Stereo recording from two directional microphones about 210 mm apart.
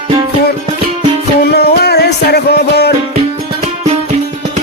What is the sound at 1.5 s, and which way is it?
Music, 50° left (ahead or behind).